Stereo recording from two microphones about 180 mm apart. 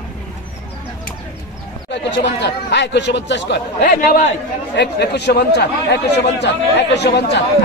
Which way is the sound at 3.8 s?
45° left (ahead or behind).